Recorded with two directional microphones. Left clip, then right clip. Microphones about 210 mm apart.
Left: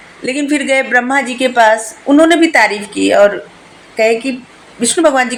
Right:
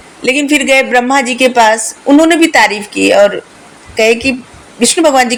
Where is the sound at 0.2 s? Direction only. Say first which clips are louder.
Right 5 dB; 30° right (ahead or behind).